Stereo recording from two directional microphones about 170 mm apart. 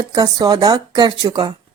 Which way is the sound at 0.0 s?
25° right (ahead or behind).